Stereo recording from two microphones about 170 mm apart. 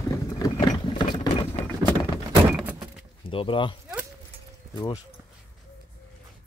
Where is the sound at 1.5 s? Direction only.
25° left (ahead or behind).